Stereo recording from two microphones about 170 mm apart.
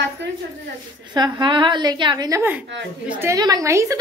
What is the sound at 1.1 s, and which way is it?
A woman's voice, 25° right (ahead or behind).